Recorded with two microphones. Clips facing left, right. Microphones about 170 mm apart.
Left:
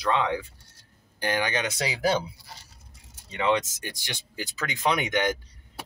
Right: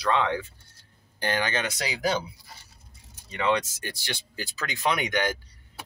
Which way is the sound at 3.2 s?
20° left (ahead or behind).